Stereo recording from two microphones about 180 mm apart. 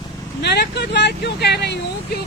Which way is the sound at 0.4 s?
65° left (ahead or behind).